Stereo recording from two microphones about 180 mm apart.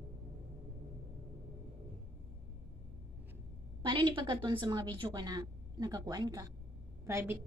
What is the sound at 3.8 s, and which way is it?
A woman's voice, 25° right (ahead or behind).